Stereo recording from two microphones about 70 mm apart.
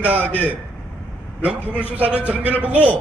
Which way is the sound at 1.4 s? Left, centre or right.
Centre.